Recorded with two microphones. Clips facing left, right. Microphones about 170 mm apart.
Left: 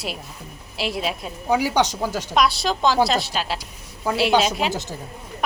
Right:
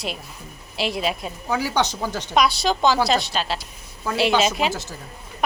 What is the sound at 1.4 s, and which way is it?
A woman's voice, 15° left (ahead or behind).